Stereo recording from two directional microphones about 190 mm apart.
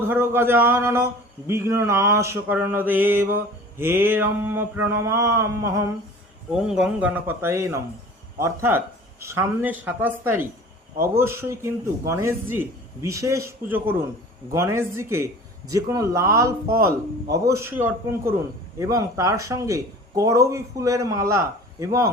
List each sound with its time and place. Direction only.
0.1 s a man's voice: 10° right (ahead or behind)
6.5 s a man's voice: 5° right (ahead or behind)